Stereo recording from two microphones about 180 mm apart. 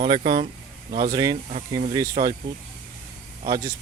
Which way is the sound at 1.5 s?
35° right (ahead or behind).